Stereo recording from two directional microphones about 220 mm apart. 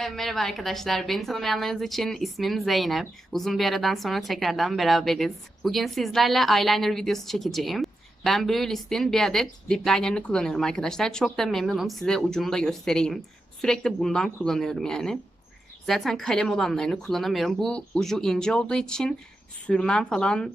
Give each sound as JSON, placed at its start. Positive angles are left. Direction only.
{"t": 0.0, "sound": "a woman's voice", "side_deg": 0}